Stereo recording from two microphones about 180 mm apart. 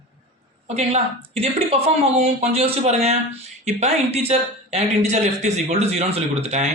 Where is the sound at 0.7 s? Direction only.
35° right (ahead or behind).